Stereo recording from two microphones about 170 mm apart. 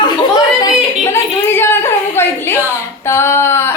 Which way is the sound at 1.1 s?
15° left (ahead or behind).